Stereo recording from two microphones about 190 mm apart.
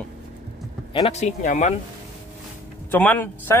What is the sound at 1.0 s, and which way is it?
Speech, 35° left (ahead or behind).